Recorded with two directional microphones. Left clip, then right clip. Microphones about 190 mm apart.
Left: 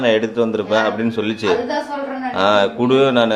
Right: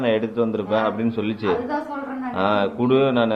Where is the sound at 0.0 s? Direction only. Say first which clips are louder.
Left 5 dB; 15° left (ahead or behind).